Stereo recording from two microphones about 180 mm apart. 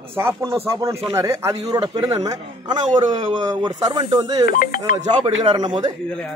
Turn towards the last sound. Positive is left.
turn(degrees=-25)  # may be behind; listen again after turning